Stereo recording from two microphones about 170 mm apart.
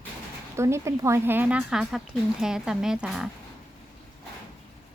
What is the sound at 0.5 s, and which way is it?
Speech, 15° right (ahead or behind).